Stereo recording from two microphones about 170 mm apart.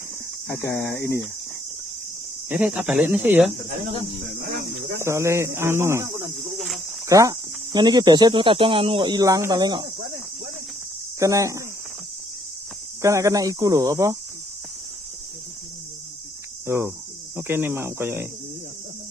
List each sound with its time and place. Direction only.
0.5 s speech: 15° left (ahead or behind)
2.5 s speech: 5° right (ahead or behind)
4.3 s cricket: 75° right (ahead or behind)
4.9 s speech: 15° right (ahead or behind)
6.5 s cricket: centre (ahead or behind)
7.1 s speech: 20° right (ahead or behind)
11.1 s speech: 20° right (ahead or behind)
13.0 s speech: 20° right (ahead or behind)
16.6 s speech: 15° right (ahead or behind)